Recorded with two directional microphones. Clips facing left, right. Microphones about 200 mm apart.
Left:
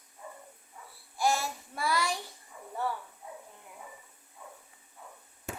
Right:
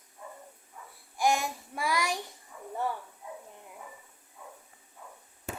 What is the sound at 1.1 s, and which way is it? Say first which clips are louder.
Child singing: right 2 dB; 15° right (ahead or behind).